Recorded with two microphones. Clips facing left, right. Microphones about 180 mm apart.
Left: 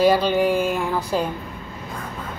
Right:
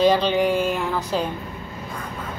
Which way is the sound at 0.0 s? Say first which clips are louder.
Left 1 dB; 10° left (ahead or behind).